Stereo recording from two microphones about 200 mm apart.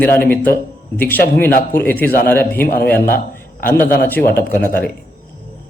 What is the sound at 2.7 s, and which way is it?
Speech, 50° left (ahead or behind).